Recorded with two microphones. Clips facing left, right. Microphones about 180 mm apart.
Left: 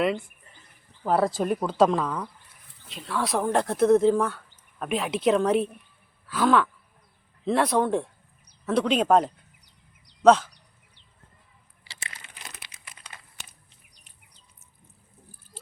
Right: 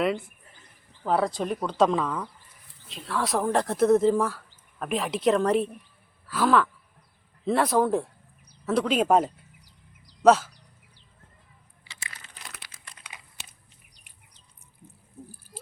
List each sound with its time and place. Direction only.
1.0 s speech: 5° left (ahead or behind)
6.2 s a sound: centre (ahead or behind)
7.4 s speech: centre (ahead or behind)